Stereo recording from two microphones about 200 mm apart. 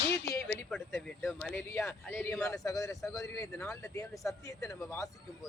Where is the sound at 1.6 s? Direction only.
15° left (ahead or behind).